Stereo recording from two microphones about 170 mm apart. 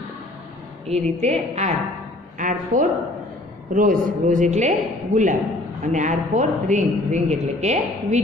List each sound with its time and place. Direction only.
0.8 s a woman's voice: 40° right (ahead or behind)
2.3 s speech: 50° right (ahead or behind)